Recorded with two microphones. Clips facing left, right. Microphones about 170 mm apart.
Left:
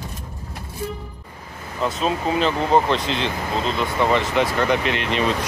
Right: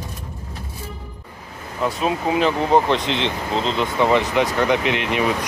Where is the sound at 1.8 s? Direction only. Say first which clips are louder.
Right 1 dB; 15° right (ahead or behind).